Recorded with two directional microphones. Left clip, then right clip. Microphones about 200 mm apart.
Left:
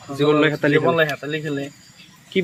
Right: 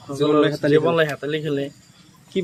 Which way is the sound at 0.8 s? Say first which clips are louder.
Left 1 dB; 25° right (ahead or behind).